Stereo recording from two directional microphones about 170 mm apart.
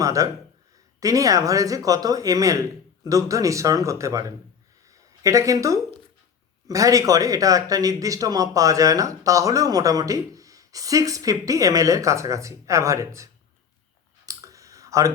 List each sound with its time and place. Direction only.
0.0 s speech: 20° right (ahead or behind)
4.9 s a sound: 20° right (ahead or behind)
6.7 s speech: 20° right (ahead or behind)
14.3 s clicking: 20° right (ahead or behind)